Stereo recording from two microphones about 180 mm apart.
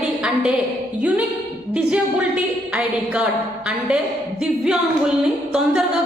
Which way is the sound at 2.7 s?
5° right (ahead or behind).